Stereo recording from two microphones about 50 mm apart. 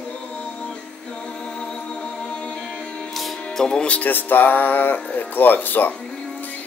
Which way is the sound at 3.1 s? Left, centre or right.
Centre.